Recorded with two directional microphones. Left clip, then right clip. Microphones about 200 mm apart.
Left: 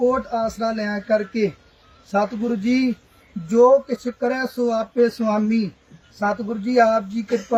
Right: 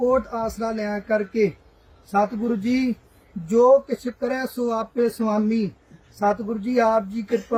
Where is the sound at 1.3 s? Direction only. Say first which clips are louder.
Right 1 dB; centre (ahead or behind).